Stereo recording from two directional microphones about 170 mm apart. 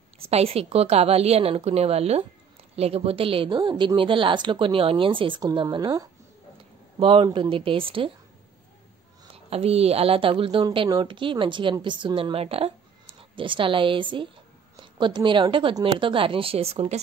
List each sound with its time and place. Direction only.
0.2 s a woman's voice: 35° right (ahead or behind)
9.3 s a woman's voice: 35° right (ahead or behind)